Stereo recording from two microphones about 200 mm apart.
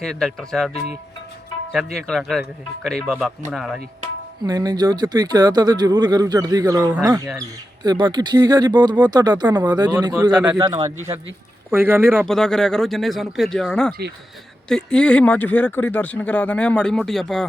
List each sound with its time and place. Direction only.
0.0 s speech: 5° left (ahead or behind)
1.7 s speech: centre (ahead or behind)
4.4 s speech: 20° right (ahead or behind)
10.3 s speech: 5° right (ahead or behind)
10.6 s speech: 20° right (ahead or behind)
12.2 s speech: centre (ahead or behind)